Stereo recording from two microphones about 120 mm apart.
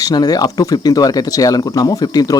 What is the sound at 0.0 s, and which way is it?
Speech, 35° left (ahead or behind).